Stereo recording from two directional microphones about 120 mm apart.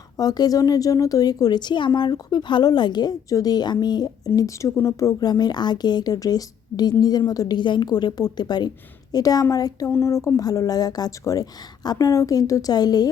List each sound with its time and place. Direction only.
0.2 s speech: 30° left (ahead or behind)